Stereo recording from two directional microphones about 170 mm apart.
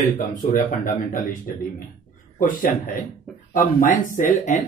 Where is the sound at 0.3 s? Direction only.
50° left (ahead or behind).